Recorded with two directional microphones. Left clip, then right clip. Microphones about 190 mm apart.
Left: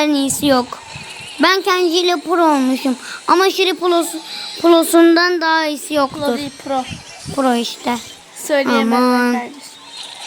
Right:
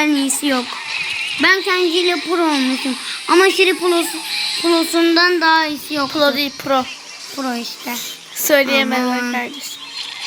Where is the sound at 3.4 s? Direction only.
65° left (ahead or behind).